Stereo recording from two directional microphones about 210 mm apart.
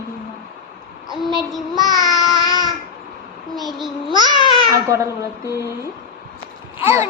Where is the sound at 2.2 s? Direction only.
15° left (ahead or behind).